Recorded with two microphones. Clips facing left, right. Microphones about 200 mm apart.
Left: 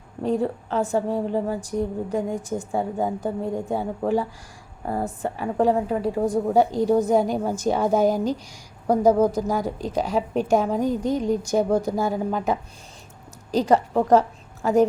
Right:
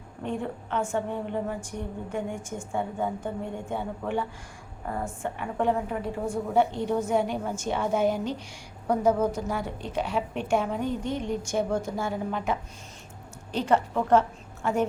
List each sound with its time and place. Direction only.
0.2 s a woman's voice: 35° left (ahead or behind)